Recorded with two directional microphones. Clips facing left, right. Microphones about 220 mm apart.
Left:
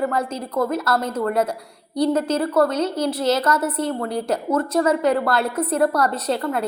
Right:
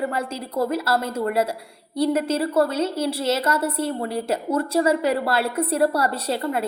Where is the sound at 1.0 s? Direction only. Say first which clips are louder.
Left 2 dB; 10° right (ahead or behind).